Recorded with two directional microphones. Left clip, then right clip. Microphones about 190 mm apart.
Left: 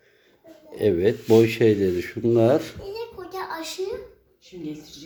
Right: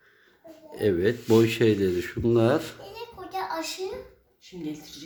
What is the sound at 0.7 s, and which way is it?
Speech, centre (ahead or behind).